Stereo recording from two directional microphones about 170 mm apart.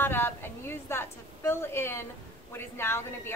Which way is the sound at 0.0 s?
10° left (ahead or behind).